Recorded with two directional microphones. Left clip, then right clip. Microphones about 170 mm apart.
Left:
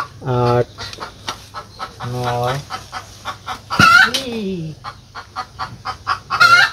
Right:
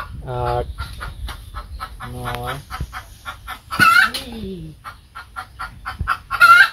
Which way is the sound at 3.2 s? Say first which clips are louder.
Left 7 dB; 15° left (ahead or behind).